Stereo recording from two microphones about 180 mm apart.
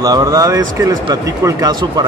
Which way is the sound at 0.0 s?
20° right (ahead or behind).